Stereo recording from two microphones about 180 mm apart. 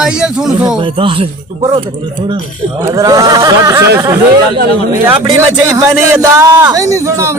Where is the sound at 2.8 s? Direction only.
20° right (ahead or behind).